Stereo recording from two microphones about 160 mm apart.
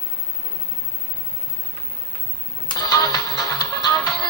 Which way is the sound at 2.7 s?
25° left (ahead or behind).